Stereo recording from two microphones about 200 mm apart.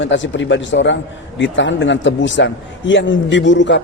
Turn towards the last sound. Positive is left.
turn(degrees=65)  # may be behind; listen again after turning